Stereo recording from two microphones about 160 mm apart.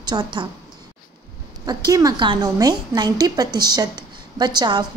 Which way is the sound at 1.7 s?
25° right (ahead or behind).